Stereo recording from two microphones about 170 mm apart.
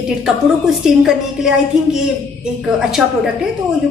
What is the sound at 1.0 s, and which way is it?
Speech, 5° right (ahead or behind).